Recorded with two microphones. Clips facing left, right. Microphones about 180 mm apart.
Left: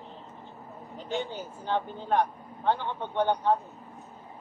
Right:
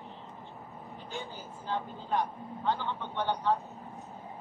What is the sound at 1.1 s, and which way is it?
Speech, 75° left (ahead or behind).